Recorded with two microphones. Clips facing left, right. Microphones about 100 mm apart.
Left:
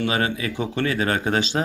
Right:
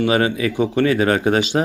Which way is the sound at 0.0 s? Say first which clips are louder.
Right 6 dB; 15° right (ahead or behind).